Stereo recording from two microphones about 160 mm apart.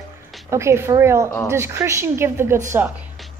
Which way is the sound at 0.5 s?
15° right (ahead or behind).